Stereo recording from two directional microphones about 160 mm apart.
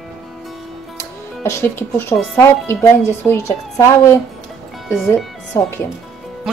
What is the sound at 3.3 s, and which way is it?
Speech, 15° left (ahead or behind).